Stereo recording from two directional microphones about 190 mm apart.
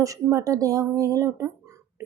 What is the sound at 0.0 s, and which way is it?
A woman's voice, 15° right (ahead or behind).